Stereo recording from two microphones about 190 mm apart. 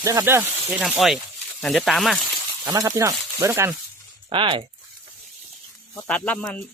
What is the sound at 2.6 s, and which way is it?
Speech, 20° right (ahead or behind).